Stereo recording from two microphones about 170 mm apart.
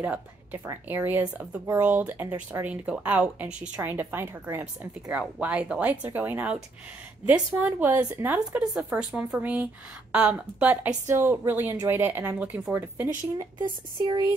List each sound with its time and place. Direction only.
0.0 s speech: 10° right (ahead or behind)
13.4 s speech: 25° right (ahead or behind)